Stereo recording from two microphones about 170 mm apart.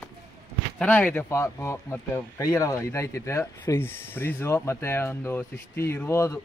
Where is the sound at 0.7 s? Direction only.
10° left (ahead or behind).